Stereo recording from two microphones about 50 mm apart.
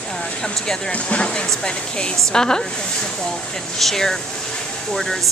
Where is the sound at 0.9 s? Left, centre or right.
Left.